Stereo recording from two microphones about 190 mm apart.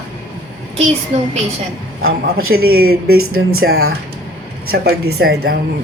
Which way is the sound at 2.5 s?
55° right (ahead or behind).